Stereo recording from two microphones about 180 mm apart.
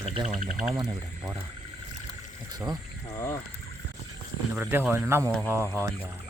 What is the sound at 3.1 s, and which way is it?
Speech, 20° left (ahead or behind).